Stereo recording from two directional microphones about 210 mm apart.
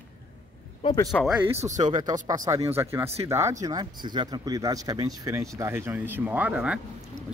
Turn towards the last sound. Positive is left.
turn(degrees=-5)  # may be behind; listen again after turning